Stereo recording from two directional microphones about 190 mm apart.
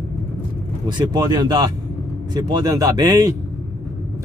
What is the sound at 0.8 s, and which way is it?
Speech, 20° right (ahead or behind).